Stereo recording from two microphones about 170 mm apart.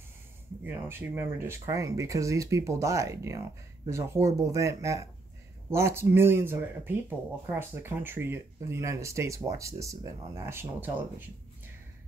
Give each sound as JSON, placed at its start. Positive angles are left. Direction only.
{"t": 0.7, "sound": "speech", "side_deg": -10}